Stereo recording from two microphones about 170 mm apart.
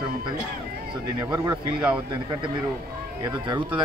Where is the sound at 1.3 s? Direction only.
20° right (ahead or behind).